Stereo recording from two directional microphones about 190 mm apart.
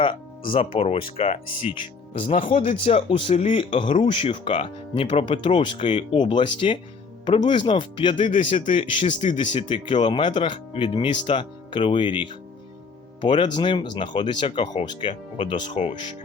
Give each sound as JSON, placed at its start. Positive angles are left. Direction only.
{"t": 0.5, "sound": "speech", "side_deg": 30}
{"t": 15.7, "sound": "speech", "side_deg": 40}